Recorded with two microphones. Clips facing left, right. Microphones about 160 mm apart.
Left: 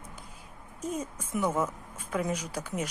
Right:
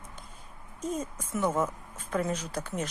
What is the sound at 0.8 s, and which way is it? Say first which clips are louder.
A woman's voice: right 1 dB; 10° left (ahead or behind).